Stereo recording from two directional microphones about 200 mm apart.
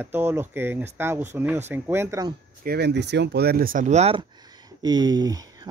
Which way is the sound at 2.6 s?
55° right (ahead or behind).